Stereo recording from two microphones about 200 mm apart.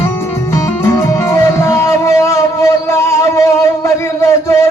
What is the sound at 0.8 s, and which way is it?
Music, 15° left (ahead or behind).